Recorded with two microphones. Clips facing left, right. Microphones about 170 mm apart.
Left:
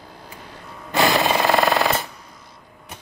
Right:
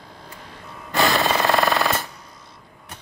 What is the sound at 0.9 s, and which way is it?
Jackhammer, centre (ahead or behind).